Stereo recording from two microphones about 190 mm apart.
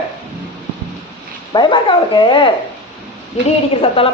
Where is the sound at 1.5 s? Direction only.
25° left (ahead or behind).